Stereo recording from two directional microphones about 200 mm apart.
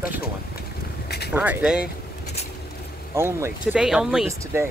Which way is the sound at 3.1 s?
15° right (ahead or behind).